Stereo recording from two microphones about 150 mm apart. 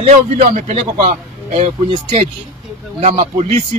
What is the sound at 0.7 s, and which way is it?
Speech, 45° right (ahead or behind).